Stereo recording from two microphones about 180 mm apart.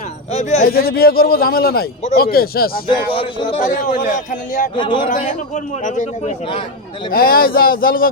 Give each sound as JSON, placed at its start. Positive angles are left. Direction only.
{"t": 0.3, "sound": "speech", "side_deg": 40}
{"t": 0.7, "sound": "a man's voice", "side_deg": 55}
{"t": 2.8, "sound": "speech", "side_deg": 30}
{"t": 3.4, "sound": "speech", "side_deg": 45}
{"t": 4.8, "sound": "speech", "side_deg": 25}
{"t": 5.0, "sound": "speech", "side_deg": 45}